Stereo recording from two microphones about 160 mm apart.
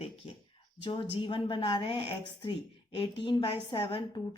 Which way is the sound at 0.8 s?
30° left (ahead or behind).